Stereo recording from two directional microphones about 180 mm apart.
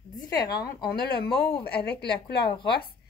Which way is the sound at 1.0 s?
60° left (ahead or behind).